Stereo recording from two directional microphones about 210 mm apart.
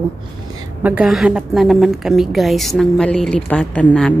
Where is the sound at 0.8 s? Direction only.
5° right (ahead or behind).